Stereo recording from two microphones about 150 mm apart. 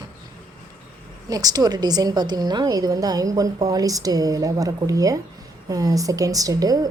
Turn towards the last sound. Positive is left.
turn(degrees=-25)  # may be behind; listen again after turning